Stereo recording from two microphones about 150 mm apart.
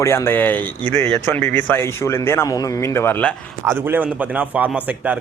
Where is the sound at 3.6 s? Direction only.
15° right (ahead or behind).